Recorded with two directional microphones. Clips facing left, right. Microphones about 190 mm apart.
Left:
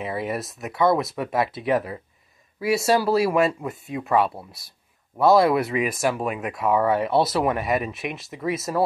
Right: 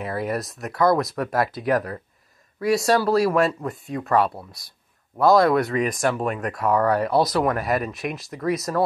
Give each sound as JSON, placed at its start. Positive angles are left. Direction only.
{"t": 0.0, "sound": "speech", "side_deg": 0}